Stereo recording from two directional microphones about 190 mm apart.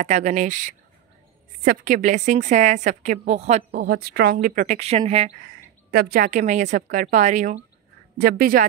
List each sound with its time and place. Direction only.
0.0 s a woman's voice: 40° right (ahead or behind)
3.7 s a woman's voice: 55° right (ahead or behind)
4.7 s a woman's voice: 35° right (ahead or behind)
5.9 s a woman's voice: 55° right (ahead or behind)
8.2 s a woman's voice: 50° right (ahead or behind)